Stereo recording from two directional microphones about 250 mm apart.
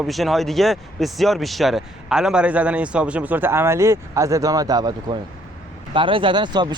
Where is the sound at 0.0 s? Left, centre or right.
Centre.